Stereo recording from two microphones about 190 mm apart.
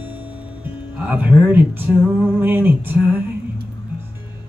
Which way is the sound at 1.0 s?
10° right (ahead or behind).